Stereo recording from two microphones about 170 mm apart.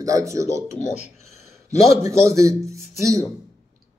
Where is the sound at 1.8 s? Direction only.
15° right (ahead or behind).